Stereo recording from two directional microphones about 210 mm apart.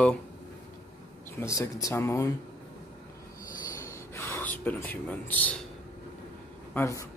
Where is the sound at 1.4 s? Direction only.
15° left (ahead or behind).